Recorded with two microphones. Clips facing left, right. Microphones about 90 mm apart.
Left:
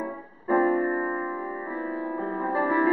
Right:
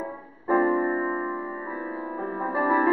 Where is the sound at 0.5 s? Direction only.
10° right (ahead or behind).